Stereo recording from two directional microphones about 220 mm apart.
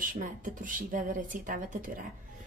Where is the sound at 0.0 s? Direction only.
35° right (ahead or behind).